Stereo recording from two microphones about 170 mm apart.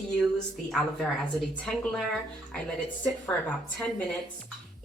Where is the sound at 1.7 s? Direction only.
5° left (ahead or behind).